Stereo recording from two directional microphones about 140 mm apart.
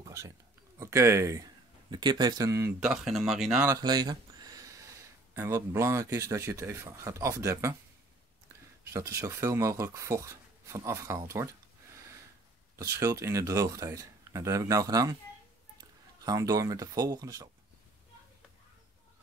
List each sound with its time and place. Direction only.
0.0 s a sound: 20° right (ahead or behind)
0.7 s speech: 20° right (ahead or behind)
2.8 s speech: centre (ahead or behind)
3.6 s speech: 25° right (ahead or behind)
8.9 s speech: 20° right (ahead or behind)
16.3 s speech: 25° right (ahead or behind)